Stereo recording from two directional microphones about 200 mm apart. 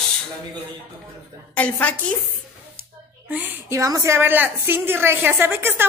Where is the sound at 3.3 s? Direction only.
10° right (ahead or behind).